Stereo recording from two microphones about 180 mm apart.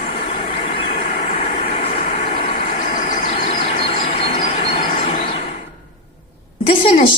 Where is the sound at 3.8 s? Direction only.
30° left (ahead or behind).